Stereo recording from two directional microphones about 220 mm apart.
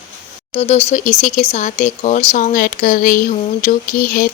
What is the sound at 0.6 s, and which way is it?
Speech, 30° left (ahead or behind).